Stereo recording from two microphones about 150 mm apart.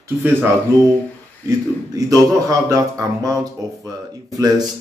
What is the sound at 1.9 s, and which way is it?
Speech, 25° right (ahead or behind).